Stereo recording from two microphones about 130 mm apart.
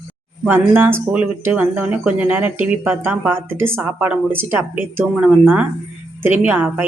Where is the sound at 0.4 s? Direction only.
15° right (ahead or behind).